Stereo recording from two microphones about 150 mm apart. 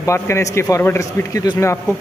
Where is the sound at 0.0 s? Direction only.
20° left (ahead or behind).